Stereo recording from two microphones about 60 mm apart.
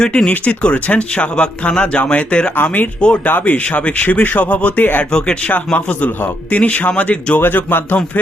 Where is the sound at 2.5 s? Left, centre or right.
Left.